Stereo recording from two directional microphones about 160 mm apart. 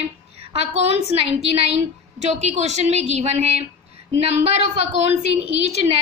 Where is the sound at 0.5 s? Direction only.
40° right (ahead or behind).